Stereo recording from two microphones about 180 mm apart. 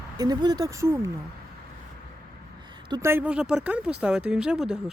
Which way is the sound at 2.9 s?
15° right (ahead or behind).